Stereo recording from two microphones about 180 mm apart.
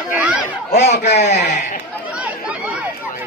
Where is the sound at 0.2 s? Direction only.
5° right (ahead or behind).